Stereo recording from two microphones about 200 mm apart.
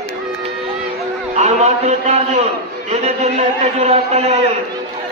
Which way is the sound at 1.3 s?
35° right (ahead or behind).